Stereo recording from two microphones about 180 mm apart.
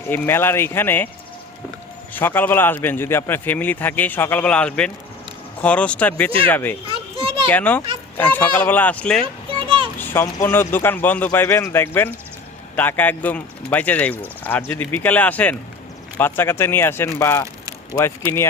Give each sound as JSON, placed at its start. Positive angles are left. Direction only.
{"t": 0.1, "sound": "a man's voice", "side_deg": 10}
{"t": 2.1, "sound": "a man's voice", "side_deg": 10}
{"t": 6.9, "sound": "children playing", "side_deg": -30}
{"t": 7.5, "sound": "a man's voice", "side_deg": 10}
{"t": 9.2, "sound": "children playing", "side_deg": -30}
{"t": 10.0, "sound": "a man's voice", "side_deg": 10}